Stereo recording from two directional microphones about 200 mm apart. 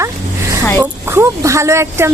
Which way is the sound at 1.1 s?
15° right (ahead or behind).